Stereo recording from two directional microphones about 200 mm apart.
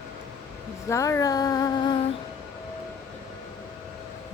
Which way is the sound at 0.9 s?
15° left (ahead or behind).